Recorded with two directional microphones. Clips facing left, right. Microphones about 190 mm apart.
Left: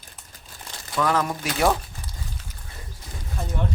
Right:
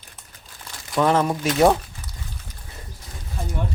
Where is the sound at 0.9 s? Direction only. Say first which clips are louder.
Right 4 dB; 25° right (ahead or behind).